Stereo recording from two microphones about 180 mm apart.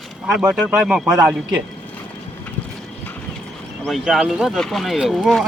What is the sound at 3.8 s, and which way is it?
Speech, centre (ahead or behind).